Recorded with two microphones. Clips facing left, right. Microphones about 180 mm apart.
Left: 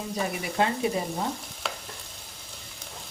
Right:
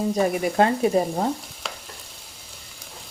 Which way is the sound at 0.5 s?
45° right (ahead or behind).